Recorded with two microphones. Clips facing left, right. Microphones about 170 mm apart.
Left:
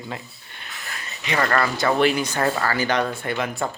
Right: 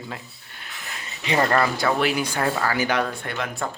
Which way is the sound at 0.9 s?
20° right (ahead or behind).